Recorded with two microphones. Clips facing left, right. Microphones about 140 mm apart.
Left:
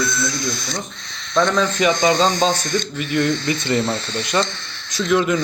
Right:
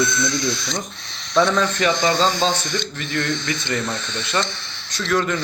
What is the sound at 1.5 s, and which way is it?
A man's voice, 15° left (ahead or behind).